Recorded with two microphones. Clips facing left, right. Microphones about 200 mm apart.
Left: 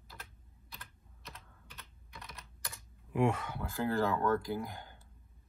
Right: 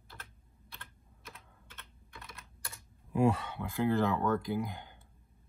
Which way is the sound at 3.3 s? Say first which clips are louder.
Right 3 dB; 30° right (ahead or behind).